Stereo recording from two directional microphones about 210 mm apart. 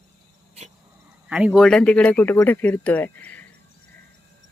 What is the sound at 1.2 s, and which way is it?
Speech, 5° right (ahead or behind).